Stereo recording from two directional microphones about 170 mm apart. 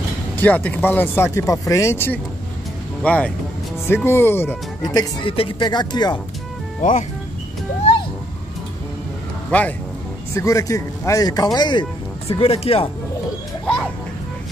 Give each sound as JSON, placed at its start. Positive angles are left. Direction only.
{"t": 0.4, "sound": "speech", "side_deg": 10}
{"t": 6.8, "sound": "speech", "side_deg": 45}
{"t": 9.5, "sound": "speech", "side_deg": 10}
{"t": 12.3, "sound": "speech", "side_deg": 35}